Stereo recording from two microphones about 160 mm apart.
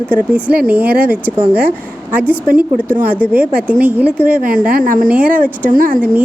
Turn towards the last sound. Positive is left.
turn(degrees=-60)  # may be behind; listen again after turning